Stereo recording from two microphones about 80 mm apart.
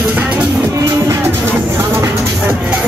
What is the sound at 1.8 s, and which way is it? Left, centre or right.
Music, right.